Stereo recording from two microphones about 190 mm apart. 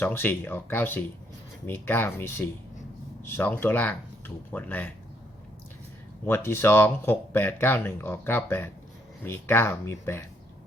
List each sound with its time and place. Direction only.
0.0 s speech: 10° left (ahead or behind)
6.2 s speech: 15° left (ahead or behind)